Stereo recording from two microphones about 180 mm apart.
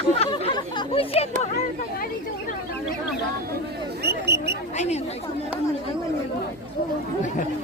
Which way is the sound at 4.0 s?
65° right (ahead or behind).